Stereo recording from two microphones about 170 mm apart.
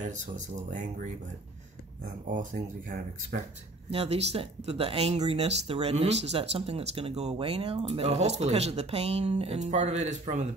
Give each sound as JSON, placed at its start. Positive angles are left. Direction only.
{"t": 2.2, "sound": "speech", "side_deg": -50}
{"t": 3.9, "sound": "speech", "side_deg": -40}